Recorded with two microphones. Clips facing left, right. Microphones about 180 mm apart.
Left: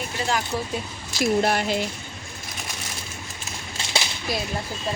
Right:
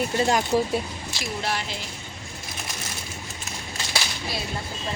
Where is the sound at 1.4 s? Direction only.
50° left (ahead or behind).